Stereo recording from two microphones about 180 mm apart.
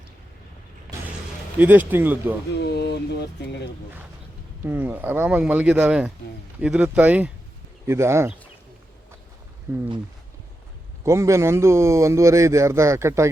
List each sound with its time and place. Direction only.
1.5 s speech: 10° right (ahead or behind)
2.6 s speech: 65° left (ahead or behind)
4.6 s speech: 10° right (ahead or behind)
9.7 s speech: 15° right (ahead or behind)
11.0 s speech: 15° right (ahead or behind)